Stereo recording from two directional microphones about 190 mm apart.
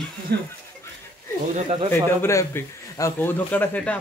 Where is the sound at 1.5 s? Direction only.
35° right (ahead or behind).